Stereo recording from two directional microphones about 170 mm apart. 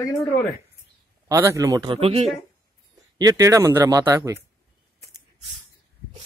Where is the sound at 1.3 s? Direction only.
15° right (ahead or behind); by 2.2 s 35° right (ahead or behind).